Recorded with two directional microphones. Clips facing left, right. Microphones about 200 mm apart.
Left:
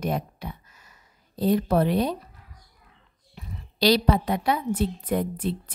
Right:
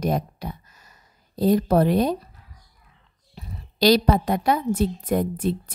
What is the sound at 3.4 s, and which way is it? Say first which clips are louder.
A woman's voice: right 3 dB; 45° right (ahead or behind).